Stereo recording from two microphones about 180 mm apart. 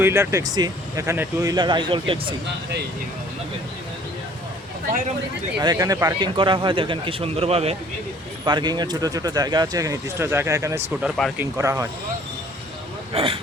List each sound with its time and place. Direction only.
0.0 s speech: 15° right (ahead or behind)
5.5 s speech: 20° right (ahead or behind)
8.4 s speech: 25° right (ahead or behind)
13.1 s speech: 30° right (ahead or behind)